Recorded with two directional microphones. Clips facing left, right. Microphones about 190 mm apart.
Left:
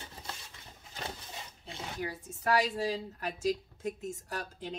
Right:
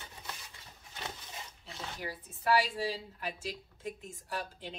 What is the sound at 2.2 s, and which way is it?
A woman's voice, 40° left (ahead or behind).